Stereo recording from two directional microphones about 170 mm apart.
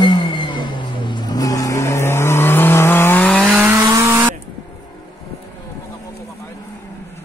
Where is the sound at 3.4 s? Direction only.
10° right (ahead or behind).